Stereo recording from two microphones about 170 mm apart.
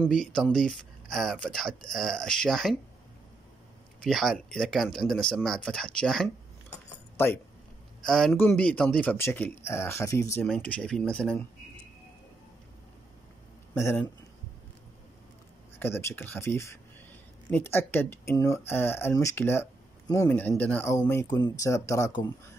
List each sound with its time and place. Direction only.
0.0 s speech: 5° left (ahead or behind)
4.0 s speech: centre (ahead or behind)
8.0 s speech: 5° left (ahead or behind)
13.7 s speech: 15° left (ahead or behind)
15.8 s speech: 15° left (ahead or behind)